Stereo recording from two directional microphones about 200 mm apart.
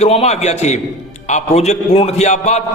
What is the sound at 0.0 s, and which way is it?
A man's voice, 30° left (ahead or behind).